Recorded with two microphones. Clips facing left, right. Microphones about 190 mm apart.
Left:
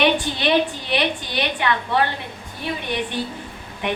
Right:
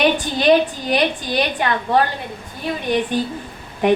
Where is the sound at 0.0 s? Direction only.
40° right (ahead or behind).